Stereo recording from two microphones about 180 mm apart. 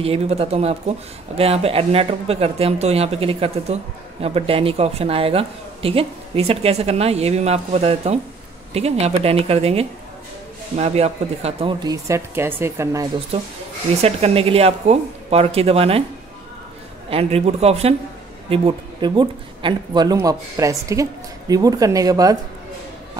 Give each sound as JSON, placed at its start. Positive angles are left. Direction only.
{"t": 0.0, "sound": "speech", "side_deg": -35}
{"t": 11.8, "sound": "speech", "side_deg": -20}
{"t": 14.0, "sound": "speech", "side_deg": -35}
{"t": 17.1, "sound": "speech", "side_deg": -35}